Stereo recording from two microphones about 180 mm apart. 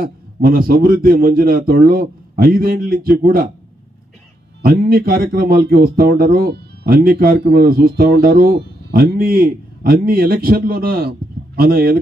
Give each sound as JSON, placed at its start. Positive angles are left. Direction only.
{"t": 0.0, "sound": "a man's voice", "side_deg": -55}
{"t": 4.6, "sound": "a man's voice", "side_deg": -60}